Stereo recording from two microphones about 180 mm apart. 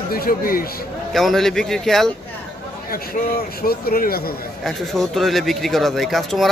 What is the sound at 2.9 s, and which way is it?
Speech, 55° left (ahead or behind).